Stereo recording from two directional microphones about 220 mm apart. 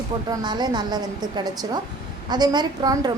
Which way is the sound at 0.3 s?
20° right (ahead or behind).